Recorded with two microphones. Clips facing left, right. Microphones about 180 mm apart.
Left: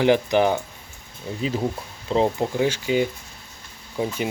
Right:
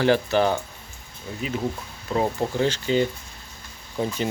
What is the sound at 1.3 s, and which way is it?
Speech, 30° left (ahead or behind).